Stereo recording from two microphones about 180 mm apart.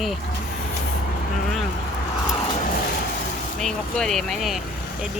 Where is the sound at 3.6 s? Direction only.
5° left (ahead or behind).